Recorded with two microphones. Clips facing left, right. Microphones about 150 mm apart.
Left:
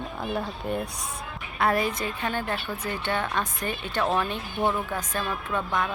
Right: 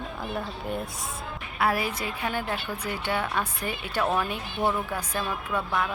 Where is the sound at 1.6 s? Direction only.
5° right (ahead or behind).